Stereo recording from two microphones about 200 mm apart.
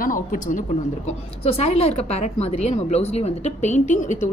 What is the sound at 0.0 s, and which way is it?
A woman's voice, 45° left (ahead or behind).